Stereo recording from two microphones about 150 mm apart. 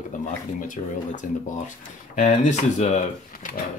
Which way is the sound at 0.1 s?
60° left (ahead or behind).